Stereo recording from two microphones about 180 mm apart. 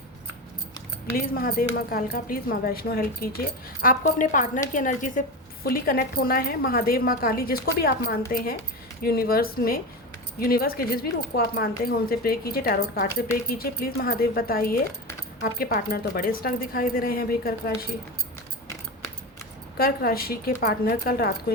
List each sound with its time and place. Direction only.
1.1 s a woman's voice: 55° left (ahead or behind)
19.7 s a woman's voice: 55° left (ahead or behind)